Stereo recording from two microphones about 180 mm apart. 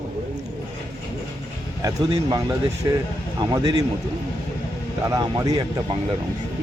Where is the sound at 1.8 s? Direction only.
20° right (ahead or behind).